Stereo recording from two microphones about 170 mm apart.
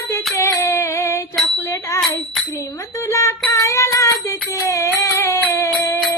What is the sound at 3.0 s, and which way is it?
Child singing, 15° left (ahead or behind).